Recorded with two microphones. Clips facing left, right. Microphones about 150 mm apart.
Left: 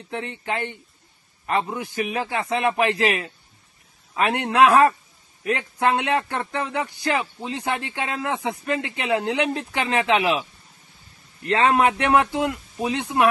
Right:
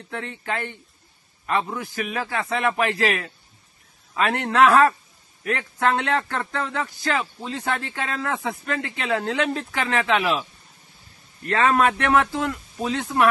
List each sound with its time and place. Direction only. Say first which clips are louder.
0.1 s a man's voice: left 1 dB; 20° left (ahead or behind)
11.4 s a man's voice: left 1 dB; 25° left (ahead or behind)